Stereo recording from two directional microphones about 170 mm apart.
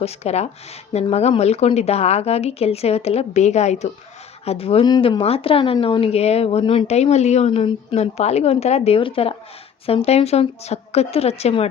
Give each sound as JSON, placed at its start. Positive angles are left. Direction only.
{"t": 0.0, "sound": "speech", "side_deg": 40}